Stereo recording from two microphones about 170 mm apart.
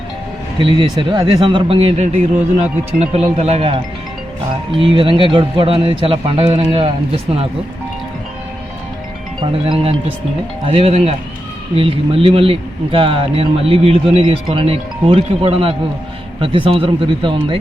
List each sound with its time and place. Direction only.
0.6 s speech: 30° right (ahead or behind)
4.8 s speech: 30° right (ahead or behind)
9.4 s speech: 30° right (ahead or behind)